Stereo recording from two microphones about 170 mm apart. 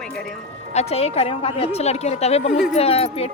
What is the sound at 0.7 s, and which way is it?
A woman's voice, 40° left (ahead or behind).